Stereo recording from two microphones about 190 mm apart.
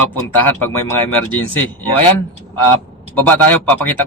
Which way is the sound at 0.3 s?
10° left (ahead or behind).